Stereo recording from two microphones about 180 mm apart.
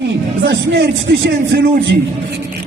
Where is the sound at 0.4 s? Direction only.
70° right (ahead or behind).